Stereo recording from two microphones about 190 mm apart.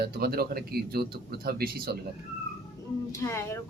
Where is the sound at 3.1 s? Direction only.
15° left (ahead or behind).